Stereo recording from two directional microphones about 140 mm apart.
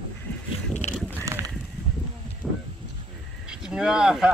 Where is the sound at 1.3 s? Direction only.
20° right (ahead or behind).